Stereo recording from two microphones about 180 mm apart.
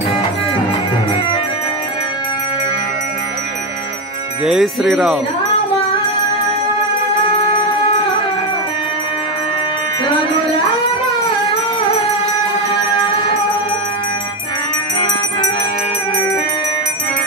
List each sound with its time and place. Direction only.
4.5 s jingle bell: centre (ahead or behind)
12.9 s music: 30° left (ahead or behind)